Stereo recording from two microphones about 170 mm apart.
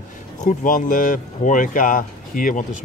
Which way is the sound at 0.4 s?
50° left (ahead or behind).